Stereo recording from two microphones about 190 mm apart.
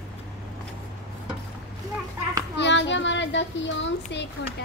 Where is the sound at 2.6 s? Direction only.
70° left (ahead or behind).